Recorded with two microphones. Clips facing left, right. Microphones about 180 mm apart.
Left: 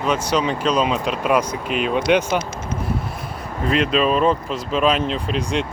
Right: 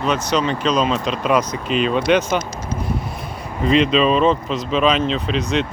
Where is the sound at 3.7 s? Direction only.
5° left (ahead or behind).